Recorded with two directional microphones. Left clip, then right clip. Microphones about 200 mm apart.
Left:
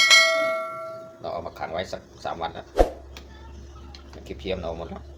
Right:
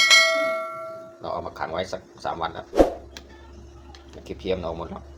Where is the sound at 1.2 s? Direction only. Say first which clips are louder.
Right 2 dB; 20° right (ahead or behind).